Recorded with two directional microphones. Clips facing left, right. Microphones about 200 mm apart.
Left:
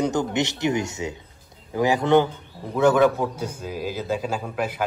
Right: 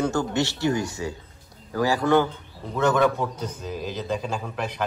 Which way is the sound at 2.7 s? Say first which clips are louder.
Left 3 dB; 10° left (ahead or behind).